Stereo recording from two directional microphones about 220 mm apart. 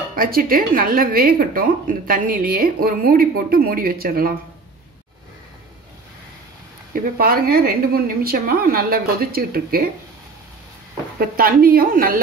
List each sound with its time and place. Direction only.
0.1 s a woman's voice: 40° right (ahead or behind)
6.9 s a woman's voice: 40° right (ahead or behind)
11.1 s a woman's voice: 40° right (ahead or behind)